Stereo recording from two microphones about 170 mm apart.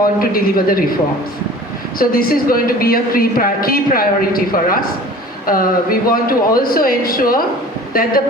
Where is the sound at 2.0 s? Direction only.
60° left (ahead or behind).